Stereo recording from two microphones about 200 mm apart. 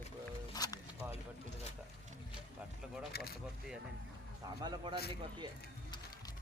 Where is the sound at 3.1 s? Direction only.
50° left (ahead or behind).